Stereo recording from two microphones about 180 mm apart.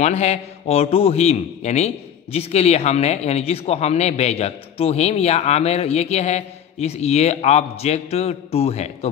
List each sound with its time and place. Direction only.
0.0 s speech: 35° left (ahead or behind)